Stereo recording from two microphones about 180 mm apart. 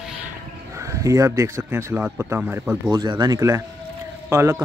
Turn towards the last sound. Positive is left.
turn(degrees=-15)  # may be behind; listen again after turning